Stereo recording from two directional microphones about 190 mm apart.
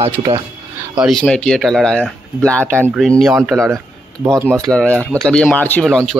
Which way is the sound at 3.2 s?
5° right (ahead or behind).